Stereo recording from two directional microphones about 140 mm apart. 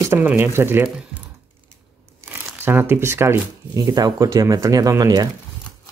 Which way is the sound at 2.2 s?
15° right (ahead or behind).